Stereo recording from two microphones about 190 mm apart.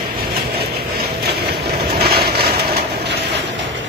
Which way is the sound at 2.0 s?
55° right (ahead or behind).